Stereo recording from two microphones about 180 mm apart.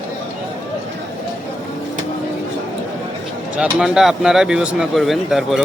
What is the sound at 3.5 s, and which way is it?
Speech, 5° right (ahead or behind).